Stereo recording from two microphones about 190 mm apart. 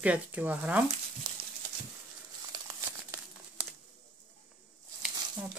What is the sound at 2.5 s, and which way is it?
Crumpling, 25° right (ahead or behind).